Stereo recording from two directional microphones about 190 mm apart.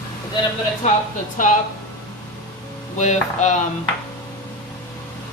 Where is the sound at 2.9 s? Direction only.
40° left (ahead or behind).